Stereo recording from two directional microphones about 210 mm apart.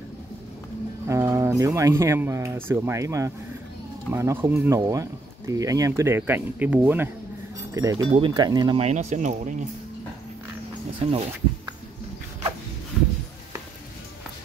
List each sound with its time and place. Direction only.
1.0 s speech: 15° right (ahead or behind); by 9.6 s 35° right (ahead or behind)
11.0 s speech: 30° right (ahead or behind)